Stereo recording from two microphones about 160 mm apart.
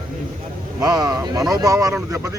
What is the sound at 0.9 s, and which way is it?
Speech, 25° right (ahead or behind).